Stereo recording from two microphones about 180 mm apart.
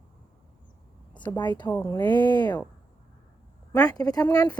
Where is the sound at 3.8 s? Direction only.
20° left (ahead or behind).